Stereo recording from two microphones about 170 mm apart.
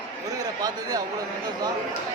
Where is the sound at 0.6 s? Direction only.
20° right (ahead or behind).